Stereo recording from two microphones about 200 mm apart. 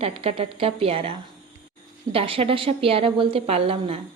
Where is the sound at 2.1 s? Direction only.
30° right (ahead or behind).